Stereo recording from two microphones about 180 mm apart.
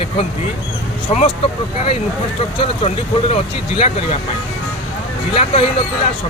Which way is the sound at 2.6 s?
35° left (ahead or behind).